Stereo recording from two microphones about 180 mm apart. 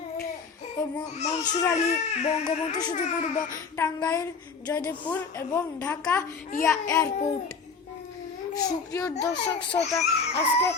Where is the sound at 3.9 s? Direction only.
20° left (ahead or behind).